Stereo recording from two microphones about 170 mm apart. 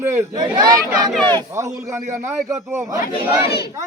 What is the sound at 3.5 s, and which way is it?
Battle cry, 70° left (ahead or behind).